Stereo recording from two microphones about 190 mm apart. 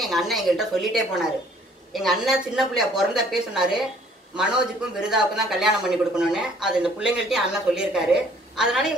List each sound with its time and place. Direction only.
0.0 s speech: centre (ahead or behind)